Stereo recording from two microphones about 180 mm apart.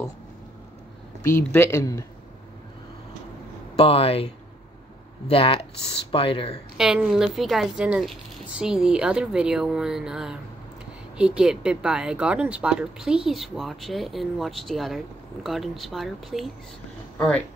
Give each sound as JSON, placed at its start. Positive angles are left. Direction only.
{"t": 1.2, "sound": "speech", "side_deg": 15}
{"t": 3.7, "sound": "speech", "side_deg": 30}
{"t": 5.3, "sound": "speech", "side_deg": 30}
{"t": 6.8, "sound": "speech", "side_deg": -5}